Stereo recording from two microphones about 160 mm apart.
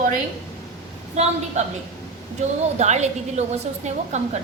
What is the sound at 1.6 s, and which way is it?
Speech, 45° right (ahead or behind).